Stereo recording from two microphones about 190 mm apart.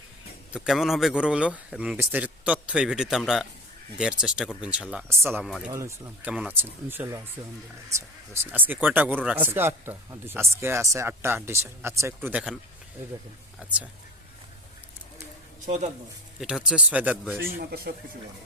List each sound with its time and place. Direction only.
0.5 s a man's voice: 5° right (ahead or behind)
5.7 s speech: 15° right (ahead or behind)
13.6 s speech: 5° right (ahead or behind)
15.6 s speech: 40° right (ahead or behind)
16.4 s a man's voice: 5° right (ahead or behind)
17.4 s speech: 55° right (ahead or behind)